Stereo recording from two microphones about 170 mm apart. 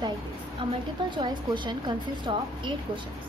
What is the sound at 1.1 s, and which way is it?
A woman's voice, 25° right (ahead or behind).